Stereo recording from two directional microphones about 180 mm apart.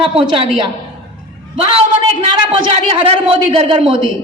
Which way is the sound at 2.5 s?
30° right (ahead or behind).